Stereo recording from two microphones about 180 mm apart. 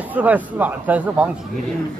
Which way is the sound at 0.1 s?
10° right (ahead or behind).